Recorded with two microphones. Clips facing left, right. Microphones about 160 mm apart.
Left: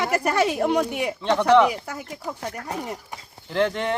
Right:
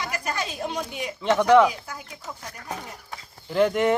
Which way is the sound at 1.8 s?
65° left (ahead or behind).